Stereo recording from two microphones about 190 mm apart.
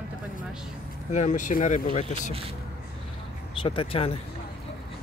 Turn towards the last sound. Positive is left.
turn(degrees=30)  # may be behind; listen again after turning